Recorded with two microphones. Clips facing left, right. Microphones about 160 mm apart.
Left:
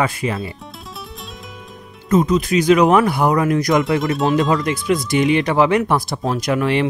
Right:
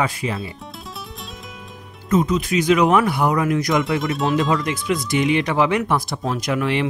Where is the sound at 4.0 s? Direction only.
Centre (ahead or behind).